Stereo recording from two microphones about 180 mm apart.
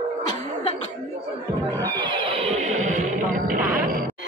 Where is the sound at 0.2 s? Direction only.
20° left (ahead or behind).